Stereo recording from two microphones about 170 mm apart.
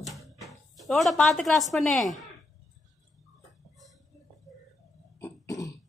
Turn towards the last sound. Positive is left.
turn(degrees=20)  # may be behind; listen again after turning